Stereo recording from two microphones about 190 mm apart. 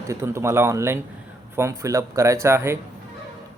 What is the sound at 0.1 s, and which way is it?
Speech, 15° right (ahead or behind).